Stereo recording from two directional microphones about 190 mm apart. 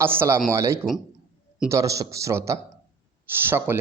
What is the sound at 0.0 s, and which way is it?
Speech, 10° right (ahead or behind).